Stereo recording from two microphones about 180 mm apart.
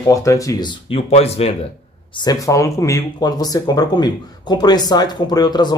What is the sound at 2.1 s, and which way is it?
Speech, 20° left (ahead or behind).